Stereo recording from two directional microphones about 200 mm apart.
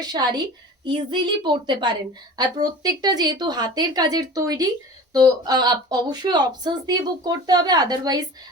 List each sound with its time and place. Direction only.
0.0 s speech: 20° right (ahead or behind)